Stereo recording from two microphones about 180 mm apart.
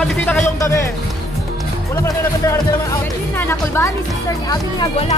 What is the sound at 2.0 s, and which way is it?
Speech, 15° left (ahead or behind).